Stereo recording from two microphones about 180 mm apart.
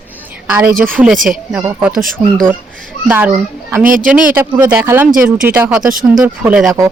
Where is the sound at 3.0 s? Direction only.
10° right (ahead or behind).